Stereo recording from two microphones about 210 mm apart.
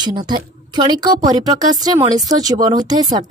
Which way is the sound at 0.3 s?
20° right (ahead or behind).